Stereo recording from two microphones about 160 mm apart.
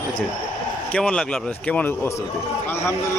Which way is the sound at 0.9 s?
5° left (ahead or behind).